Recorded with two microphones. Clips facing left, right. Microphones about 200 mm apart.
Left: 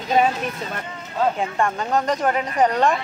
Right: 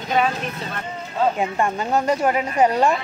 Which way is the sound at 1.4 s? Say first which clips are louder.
Right 1 dB; 10° right (ahead or behind).